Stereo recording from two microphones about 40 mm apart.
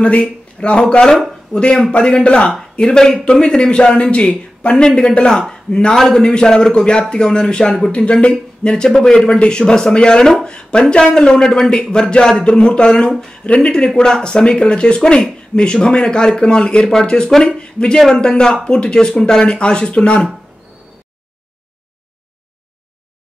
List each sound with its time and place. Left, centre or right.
0.0 s speech: left
2.8 s a man's voice: centre
4.0 s a man's voice: left
7.9 s a man's voice: left
17.5 s speech: left
17.9 s a man's voice: centre